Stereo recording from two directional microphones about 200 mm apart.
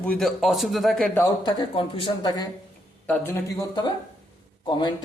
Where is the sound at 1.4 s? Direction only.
20° left (ahead or behind).